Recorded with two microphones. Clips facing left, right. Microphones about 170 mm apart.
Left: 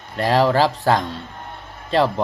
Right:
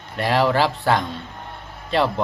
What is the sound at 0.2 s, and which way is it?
Speech, 35° left (ahead or behind).